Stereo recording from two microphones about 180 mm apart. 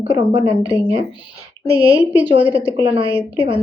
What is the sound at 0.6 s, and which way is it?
Speech, 20° left (ahead or behind).